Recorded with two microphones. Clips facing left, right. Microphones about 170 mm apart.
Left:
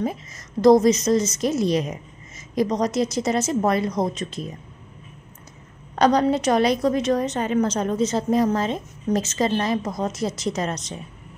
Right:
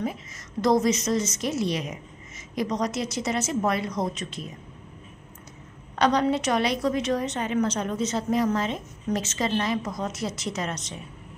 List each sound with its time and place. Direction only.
0.0 s a woman's voice: 35° left (ahead or behind)
5.9 s a woman's voice: 40° left (ahead or behind)